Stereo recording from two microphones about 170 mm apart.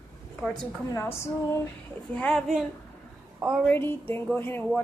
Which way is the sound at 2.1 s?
Centre (ahead or behind).